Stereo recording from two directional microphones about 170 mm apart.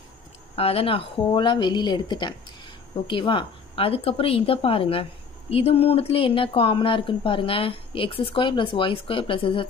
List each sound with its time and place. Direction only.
0.6 s speech: 35° left (ahead or behind)